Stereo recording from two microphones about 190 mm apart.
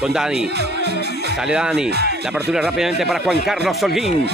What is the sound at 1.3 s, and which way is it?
Speech, 5° right (ahead or behind).